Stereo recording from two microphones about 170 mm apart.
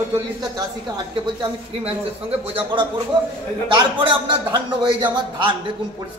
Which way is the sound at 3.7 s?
25° right (ahead or behind).